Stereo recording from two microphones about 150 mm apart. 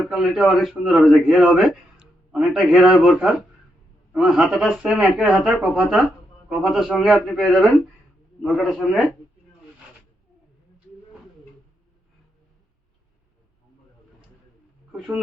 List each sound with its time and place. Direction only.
0.1 s a man's voice: centre (ahead or behind)
14.9 s speech: 5° right (ahead or behind)